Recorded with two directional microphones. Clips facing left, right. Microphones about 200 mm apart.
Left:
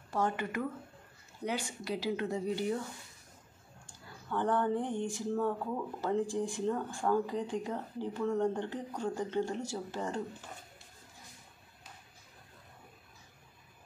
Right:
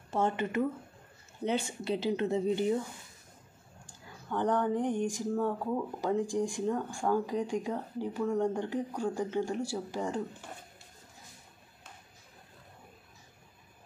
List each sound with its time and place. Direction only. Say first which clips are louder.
0.1 s speech: right 3 dB; 25° right (ahead or behind)
4.3 s speech: right 2 dB; 15° right (ahead or behind)